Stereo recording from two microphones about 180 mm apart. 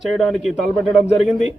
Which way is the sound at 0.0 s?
Centre (ahead or behind).